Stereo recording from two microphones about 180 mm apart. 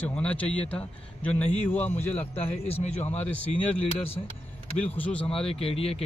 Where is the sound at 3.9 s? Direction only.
35° left (ahead or behind).